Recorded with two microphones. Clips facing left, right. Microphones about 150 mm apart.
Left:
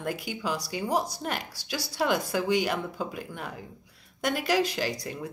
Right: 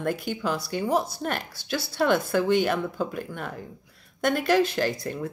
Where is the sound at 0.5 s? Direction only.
55° right (ahead or behind).